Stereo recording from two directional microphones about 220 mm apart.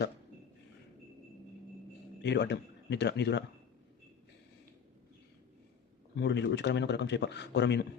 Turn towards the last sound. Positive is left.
turn(degrees=50)  # may be behind; listen again after turning